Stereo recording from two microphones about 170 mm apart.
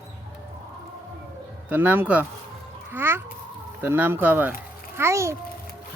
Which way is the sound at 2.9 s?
15° right (ahead or behind).